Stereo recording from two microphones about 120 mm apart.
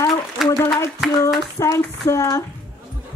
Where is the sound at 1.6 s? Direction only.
25° left (ahead or behind).